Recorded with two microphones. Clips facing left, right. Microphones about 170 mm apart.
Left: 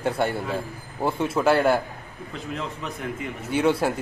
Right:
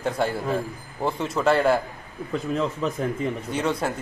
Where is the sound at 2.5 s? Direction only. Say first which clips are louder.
Right 7 dB; 40° right (ahead or behind).